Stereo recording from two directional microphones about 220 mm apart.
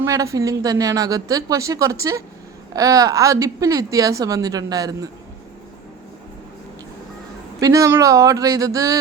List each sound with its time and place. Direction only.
0.0 s a woman's voice: 15° right (ahead or behind)
7.6 s a woman's voice: 15° right (ahead or behind)